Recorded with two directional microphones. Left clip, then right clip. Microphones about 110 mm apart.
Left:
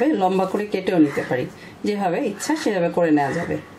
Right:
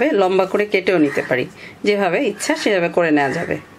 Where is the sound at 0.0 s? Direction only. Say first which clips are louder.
Right 4 dB; 45° right (ahead or behind).